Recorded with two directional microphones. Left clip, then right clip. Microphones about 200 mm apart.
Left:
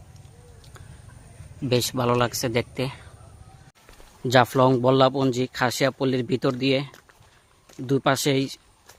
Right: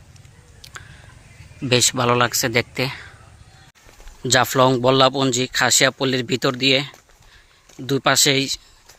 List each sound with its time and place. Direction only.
0.6 s a sound: centre (ahead or behind)
1.7 s speech: 5° right (ahead or behind)
4.2 s speech: 5° left (ahead or behind)